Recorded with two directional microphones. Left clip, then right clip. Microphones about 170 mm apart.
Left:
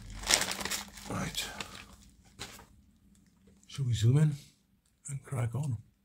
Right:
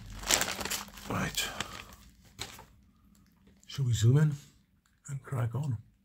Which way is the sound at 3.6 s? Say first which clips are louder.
Right 2 dB; 25° right (ahead or behind).